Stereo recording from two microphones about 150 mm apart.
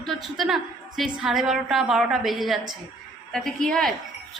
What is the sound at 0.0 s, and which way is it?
A woman's voice, centre (ahead or behind).